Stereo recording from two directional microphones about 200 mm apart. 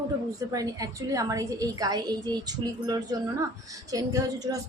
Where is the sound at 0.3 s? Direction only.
15° right (ahead or behind).